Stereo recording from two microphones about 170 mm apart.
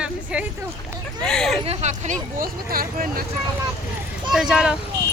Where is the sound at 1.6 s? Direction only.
40° right (ahead or behind); by 3.2 s 60° right (ahead or behind).